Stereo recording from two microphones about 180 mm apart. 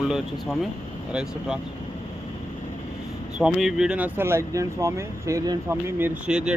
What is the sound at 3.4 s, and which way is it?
Speech, 5° right (ahead or behind).